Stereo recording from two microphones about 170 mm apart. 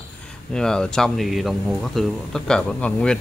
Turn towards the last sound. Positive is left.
turn(degrees=5)  # may be behind; listen again after turning